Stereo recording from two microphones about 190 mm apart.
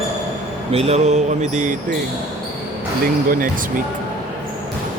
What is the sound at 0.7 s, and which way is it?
Speech, 30° right (ahead or behind).